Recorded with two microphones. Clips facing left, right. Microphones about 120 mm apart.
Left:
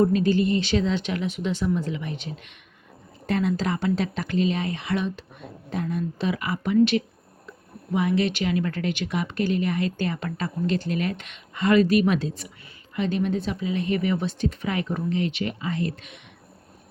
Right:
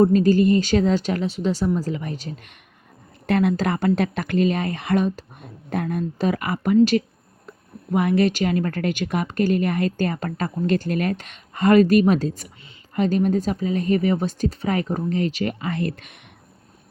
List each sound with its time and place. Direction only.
0.0 s a woman's voice: 40° right (ahead or behind)
3.2 s speech: 65° right (ahead or behind)
7.9 s a woman's voice: 50° right (ahead or behind)
15.6 s speech: 55° right (ahead or behind)